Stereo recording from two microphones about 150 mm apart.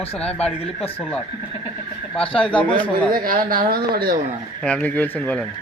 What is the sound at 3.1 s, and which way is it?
Speech, 70° right (ahead or behind).